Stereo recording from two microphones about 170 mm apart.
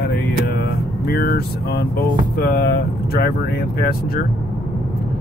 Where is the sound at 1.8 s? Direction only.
60° left (ahead or behind).